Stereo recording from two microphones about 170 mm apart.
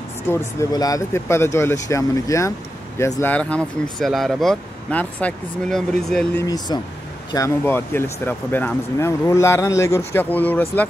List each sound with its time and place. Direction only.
0.3 s speech: 20° left (ahead or behind); by 6.2 s 5° left (ahead or behind)
6.3 s speech: 20° left (ahead or behind)